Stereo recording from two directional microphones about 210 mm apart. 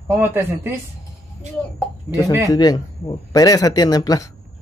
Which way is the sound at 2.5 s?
20° left (ahead or behind).